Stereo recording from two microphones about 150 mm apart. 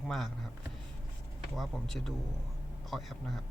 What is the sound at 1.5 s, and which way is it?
Speech, centre (ahead or behind).